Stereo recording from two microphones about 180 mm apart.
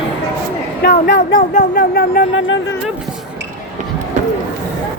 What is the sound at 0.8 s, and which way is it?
Speech, 65° left (ahead or behind).